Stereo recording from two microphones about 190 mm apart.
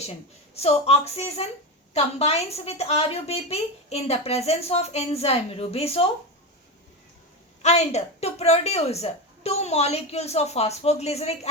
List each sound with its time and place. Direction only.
0.5 s a woman's voice: 30° left (ahead or behind)
7.6 s a woman's voice: 35° left (ahead or behind)